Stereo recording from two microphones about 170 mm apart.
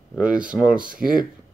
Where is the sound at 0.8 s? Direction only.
55° right (ahead or behind).